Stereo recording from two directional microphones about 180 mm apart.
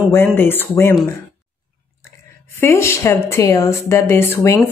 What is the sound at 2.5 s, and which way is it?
Speech, 15° left (ahead or behind).